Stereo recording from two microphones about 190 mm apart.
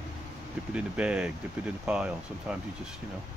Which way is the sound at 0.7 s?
5° right (ahead or behind).